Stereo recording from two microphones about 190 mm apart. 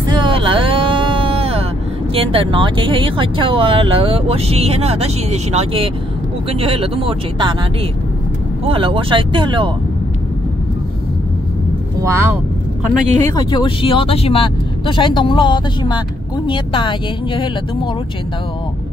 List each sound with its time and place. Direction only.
0.1 s vehicle: 25° right (ahead or behind)
2.1 s speech: 30° right (ahead or behind)
8.6 s speech: 30° right (ahead or behind)
12.0 s speech: 15° right (ahead or behind)
13.5 s speech: 25° left (ahead or behind)